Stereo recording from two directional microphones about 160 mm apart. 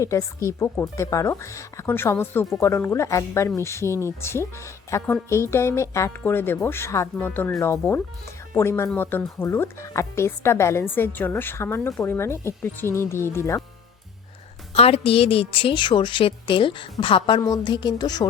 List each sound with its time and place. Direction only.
0.0 s speech: 20° left (ahead or behind)
14.7 s a woman's voice: 40° left (ahead or behind)